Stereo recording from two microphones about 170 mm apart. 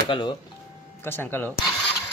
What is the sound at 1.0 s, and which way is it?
Speech, 15° left (ahead or behind).